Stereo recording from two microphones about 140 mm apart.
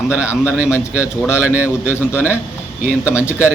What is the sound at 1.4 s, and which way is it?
Speech, 10° right (ahead or behind).